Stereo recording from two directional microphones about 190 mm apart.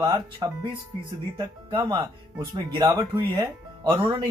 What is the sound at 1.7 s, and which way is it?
Speech, 25° right (ahead or behind).